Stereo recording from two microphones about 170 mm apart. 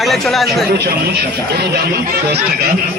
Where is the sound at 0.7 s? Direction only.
70° right (ahead or behind).